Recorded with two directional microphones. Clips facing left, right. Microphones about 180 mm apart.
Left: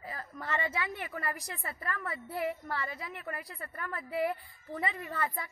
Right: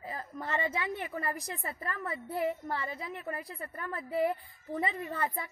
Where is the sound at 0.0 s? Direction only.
25° right (ahead or behind).